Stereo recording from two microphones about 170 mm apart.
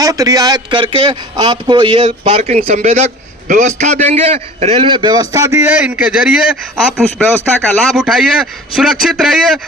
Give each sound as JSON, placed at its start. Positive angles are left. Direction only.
{"t": 0.0, "sound": "a man's voice", "side_deg": -20}
{"t": 2.0, "sound": "a man's voice", "side_deg": -45}